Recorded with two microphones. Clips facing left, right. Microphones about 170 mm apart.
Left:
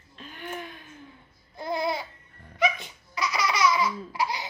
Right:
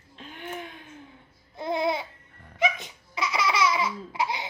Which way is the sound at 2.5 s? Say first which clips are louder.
Left 1 dB; 20° right (ahead or behind).